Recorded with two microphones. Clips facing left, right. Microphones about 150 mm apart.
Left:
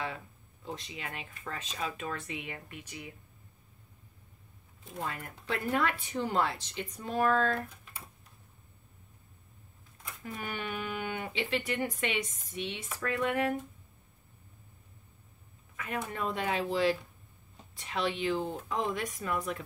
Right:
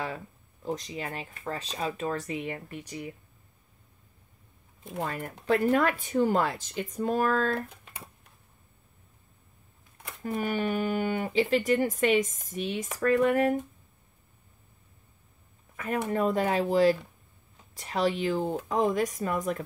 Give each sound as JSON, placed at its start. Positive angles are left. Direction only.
{"t": 0.0, "sound": "speech", "side_deg": -40}
{"t": 5.0, "sound": "speech", "side_deg": -40}
{"t": 10.2, "sound": "speech", "side_deg": -40}
{"t": 15.7, "sound": "a sound", "side_deg": -40}
{"t": 16.1, "sound": "speech", "side_deg": -40}